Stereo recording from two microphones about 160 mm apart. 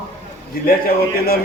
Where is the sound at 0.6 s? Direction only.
70° left (ahead or behind).